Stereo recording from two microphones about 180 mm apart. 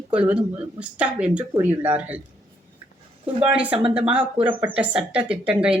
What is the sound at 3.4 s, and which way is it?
Speech, 10° right (ahead or behind).